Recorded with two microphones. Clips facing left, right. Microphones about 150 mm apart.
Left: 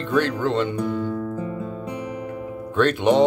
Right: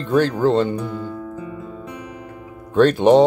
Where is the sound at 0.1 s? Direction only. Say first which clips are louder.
Right 5 dB; 35° right (ahead or behind).